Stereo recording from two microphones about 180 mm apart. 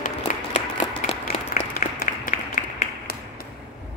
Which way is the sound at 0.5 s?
35° left (ahead or behind).